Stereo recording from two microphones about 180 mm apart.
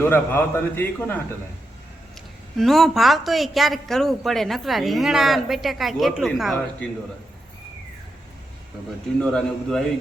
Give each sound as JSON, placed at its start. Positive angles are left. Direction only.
{"t": 0.0, "sound": "a man's voice", "side_deg": 10}
{"t": 2.6, "sound": "speech", "side_deg": 0}
{"t": 9.2, "sound": "speech", "side_deg": 5}